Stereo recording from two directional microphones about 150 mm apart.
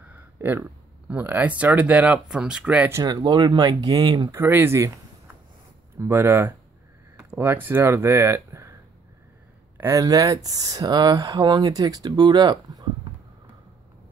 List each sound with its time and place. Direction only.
0.4 s speech: 15° right (ahead or behind)
3.0 s speech: 25° right (ahead or behind)
4.4 s speech: 15° right (ahead or behind)
9.8 s speech: 20° right (ahead or behind)